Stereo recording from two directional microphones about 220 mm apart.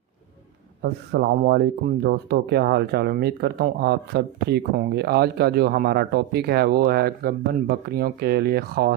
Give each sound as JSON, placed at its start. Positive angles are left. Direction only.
{"t": 0.8, "sound": "speech", "side_deg": -45}